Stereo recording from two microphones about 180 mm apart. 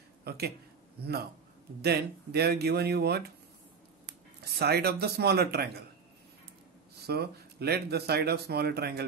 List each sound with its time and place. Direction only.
0.2 s a sound: 60° right (ahead or behind)
1.0 s speech: 60° right (ahead or behind)
4.6 s speech: 65° right (ahead or behind)
7.1 s speech: 65° right (ahead or behind)